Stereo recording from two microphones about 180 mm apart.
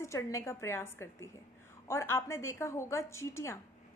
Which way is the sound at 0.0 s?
15° left (ahead or behind).